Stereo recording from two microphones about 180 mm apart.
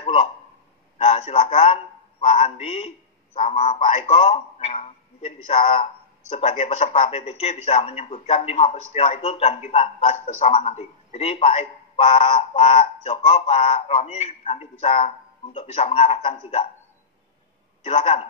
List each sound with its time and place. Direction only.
0.0 s a sound: 35° left (ahead or behind)
0.9 s a man's voice: 35° left (ahead or behind)
17.8 s speech: 35° left (ahead or behind)